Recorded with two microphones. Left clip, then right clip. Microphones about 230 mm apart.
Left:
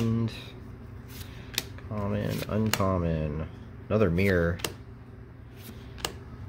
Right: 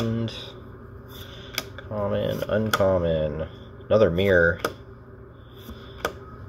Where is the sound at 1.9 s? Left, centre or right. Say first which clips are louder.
Right 7 dB; left.